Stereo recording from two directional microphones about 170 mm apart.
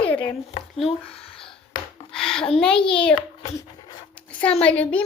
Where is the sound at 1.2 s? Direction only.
30° left (ahead or behind).